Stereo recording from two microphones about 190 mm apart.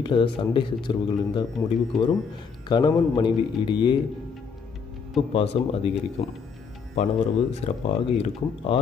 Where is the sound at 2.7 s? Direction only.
25° left (ahead or behind).